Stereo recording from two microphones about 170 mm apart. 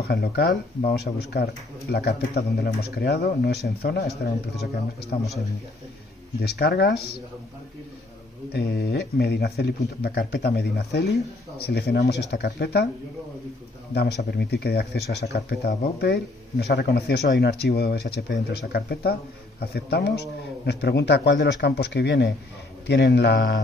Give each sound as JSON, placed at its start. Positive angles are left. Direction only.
{"t": 0.0, "sound": "speech", "side_deg": 65}
{"t": 6.6, "sound": "speech", "side_deg": 70}
{"t": 8.5, "sound": "speech", "side_deg": 70}
{"t": 11.5, "sound": "speech", "side_deg": 70}
{"t": 13.9, "sound": "a man's voice", "side_deg": 75}